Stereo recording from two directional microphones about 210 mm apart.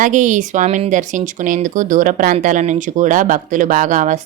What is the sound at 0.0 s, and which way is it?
Speech, 35° right (ahead or behind).